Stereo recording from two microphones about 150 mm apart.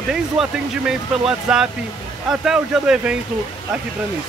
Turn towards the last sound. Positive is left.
turn(degrees=-5)  # may be behind; listen again after turning